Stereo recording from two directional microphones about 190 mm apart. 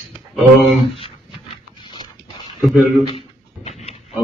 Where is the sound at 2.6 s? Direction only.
Centre (ahead or behind).